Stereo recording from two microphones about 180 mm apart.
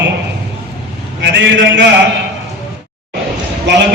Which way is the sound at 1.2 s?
80° right.